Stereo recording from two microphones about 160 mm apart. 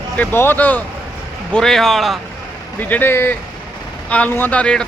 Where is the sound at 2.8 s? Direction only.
10° left (ahead or behind).